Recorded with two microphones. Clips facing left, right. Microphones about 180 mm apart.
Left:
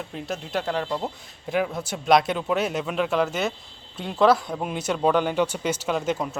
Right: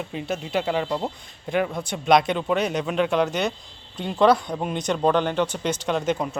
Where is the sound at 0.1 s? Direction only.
Centre (ahead or behind).